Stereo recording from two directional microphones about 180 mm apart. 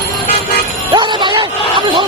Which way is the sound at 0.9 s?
25° right (ahead or behind).